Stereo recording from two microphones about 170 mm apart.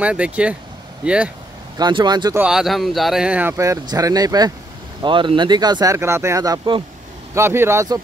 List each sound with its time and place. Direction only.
0.0 s speech: 5° right (ahead or behind)
1.8 s speech: 25° right (ahead or behind)
2.3 s speech: 5° right (ahead or behind); by 6.8 s 25° right (ahead or behind)
7.3 s speech: 15° right (ahead or behind)